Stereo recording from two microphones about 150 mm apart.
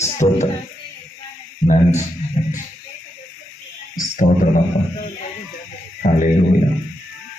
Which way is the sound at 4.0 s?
60° left (ahead or behind).